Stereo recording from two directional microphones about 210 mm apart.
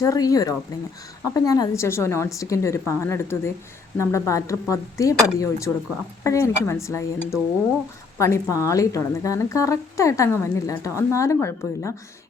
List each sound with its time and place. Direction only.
0.0 s a woman's voice: 15° left (ahead or behind)